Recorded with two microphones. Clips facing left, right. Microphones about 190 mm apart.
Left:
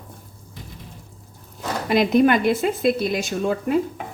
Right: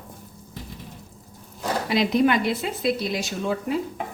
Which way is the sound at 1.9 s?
50° left (ahead or behind).